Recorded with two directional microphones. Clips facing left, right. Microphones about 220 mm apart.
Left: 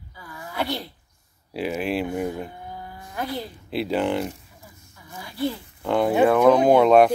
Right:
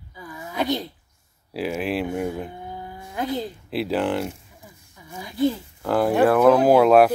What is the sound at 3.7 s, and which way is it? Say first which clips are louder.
Speech: even; centre (ahead or behind).